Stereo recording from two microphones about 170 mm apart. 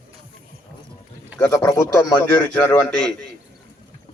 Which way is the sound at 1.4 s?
20° left (ahead or behind).